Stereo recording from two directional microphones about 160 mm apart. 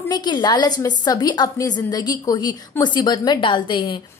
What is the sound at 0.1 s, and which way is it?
A woman's voice, 25° left (ahead or behind).